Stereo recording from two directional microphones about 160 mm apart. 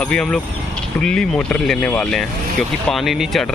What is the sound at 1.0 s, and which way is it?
Speech, 5° left (ahead or behind).